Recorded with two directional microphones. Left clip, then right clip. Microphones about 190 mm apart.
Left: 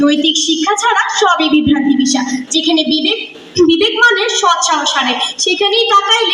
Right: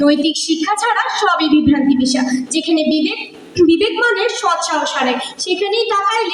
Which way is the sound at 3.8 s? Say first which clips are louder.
Left 4 dB; 20° left (ahead or behind).